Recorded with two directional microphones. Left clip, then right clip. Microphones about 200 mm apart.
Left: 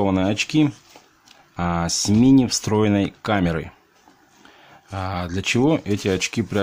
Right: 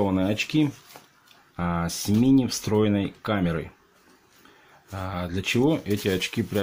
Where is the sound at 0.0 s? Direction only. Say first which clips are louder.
Left 4 dB; 25° left (ahead or behind).